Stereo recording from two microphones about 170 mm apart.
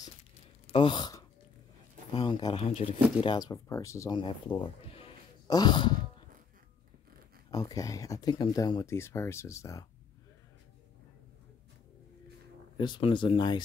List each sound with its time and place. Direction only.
0.7 s speech: 30° left (ahead or behind)
4.2 s speech: 30° left (ahead or behind)
7.5 s speech: 20° left (ahead or behind)
12.7 s speech: 25° left (ahead or behind)